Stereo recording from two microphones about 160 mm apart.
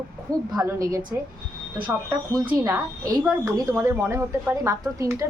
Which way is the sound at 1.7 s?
10° right (ahead or behind).